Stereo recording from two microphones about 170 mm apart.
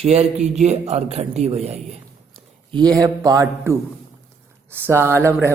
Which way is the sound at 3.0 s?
20° right (ahead or behind).